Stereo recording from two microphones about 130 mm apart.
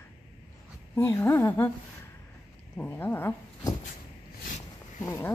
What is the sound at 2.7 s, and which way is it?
Speech, 10° left (ahead or behind).